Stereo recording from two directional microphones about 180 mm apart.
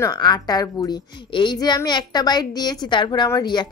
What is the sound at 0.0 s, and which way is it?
Speech, 25° left (ahead or behind).